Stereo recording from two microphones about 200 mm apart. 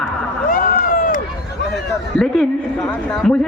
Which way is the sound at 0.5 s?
45° left (ahead or behind).